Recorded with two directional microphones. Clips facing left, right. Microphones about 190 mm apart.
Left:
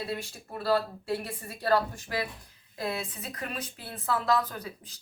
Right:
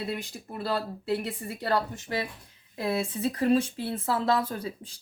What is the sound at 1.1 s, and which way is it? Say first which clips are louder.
Speech: right 3 dB; 20° right (ahead or behind).